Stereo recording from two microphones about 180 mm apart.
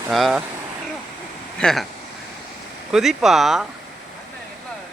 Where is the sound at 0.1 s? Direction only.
Centre (ahead or behind).